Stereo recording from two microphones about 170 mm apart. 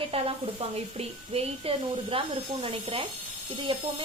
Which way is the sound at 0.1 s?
35° right (ahead or behind).